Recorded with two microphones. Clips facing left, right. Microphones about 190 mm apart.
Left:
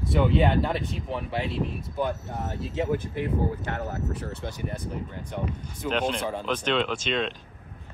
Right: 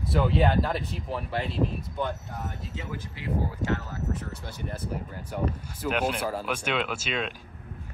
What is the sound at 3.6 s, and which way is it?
Speech, 15° right (ahead or behind).